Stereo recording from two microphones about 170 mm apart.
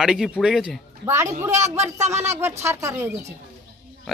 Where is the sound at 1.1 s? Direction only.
15° right (ahead or behind).